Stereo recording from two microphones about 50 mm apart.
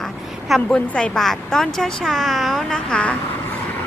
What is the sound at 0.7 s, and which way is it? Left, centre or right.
A child's voice, centre.